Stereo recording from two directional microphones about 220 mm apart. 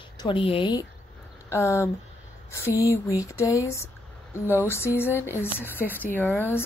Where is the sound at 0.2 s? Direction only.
25° left (ahead or behind).